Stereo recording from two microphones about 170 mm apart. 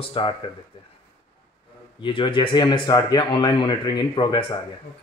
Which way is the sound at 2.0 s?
30° left (ahead or behind).